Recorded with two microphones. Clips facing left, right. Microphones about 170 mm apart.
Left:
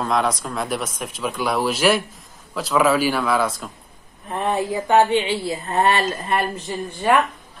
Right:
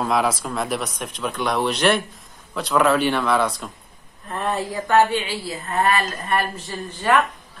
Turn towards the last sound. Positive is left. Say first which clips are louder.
# left 2 dB
turn(degrees=20)  # may be behind; listen again after turning